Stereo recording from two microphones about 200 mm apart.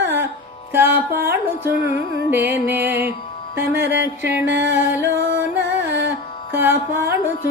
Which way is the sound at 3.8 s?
60° right (ahead or behind).